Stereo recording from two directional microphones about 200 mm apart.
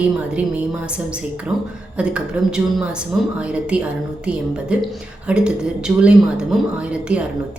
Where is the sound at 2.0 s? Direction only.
5° right (ahead or behind).